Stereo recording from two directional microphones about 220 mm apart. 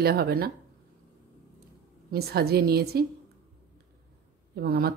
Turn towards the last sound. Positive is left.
turn(degrees=-45)  # may be behind; listen again after turning